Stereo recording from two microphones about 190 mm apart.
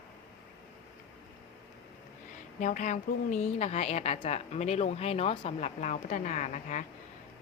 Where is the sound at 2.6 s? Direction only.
40° left (ahead or behind).